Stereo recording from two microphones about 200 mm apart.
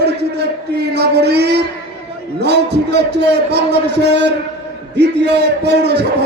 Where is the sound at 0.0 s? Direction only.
55° right (ahead or behind).